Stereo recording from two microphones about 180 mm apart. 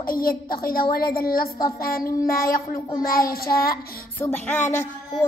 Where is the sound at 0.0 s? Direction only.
55° left (ahead or behind).